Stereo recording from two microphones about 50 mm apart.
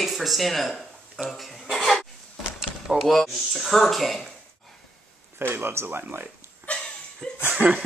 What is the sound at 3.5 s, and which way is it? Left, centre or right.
Speech, centre.